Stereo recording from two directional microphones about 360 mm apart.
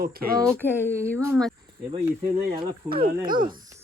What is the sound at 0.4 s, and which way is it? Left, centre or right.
Speech, centre.